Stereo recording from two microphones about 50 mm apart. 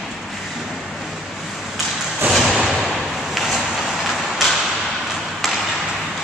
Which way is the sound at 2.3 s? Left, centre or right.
Centre.